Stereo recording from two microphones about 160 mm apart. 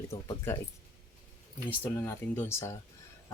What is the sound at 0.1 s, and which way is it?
Speech, 20° left (ahead or behind).